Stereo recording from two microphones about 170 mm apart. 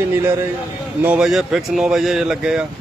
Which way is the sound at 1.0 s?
5° right (ahead or behind).